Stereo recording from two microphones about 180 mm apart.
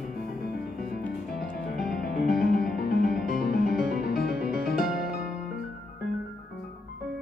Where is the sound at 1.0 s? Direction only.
5° left (ahead or behind).